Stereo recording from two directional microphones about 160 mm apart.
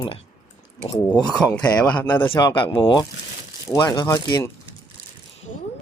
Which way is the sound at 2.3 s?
30° left (ahead or behind).